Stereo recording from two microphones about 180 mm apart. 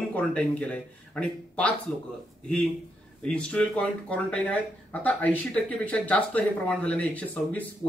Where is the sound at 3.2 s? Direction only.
5° left (ahead or behind).